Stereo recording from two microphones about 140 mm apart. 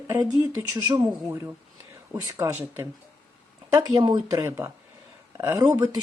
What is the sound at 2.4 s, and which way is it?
Speech, 20° right (ahead or behind).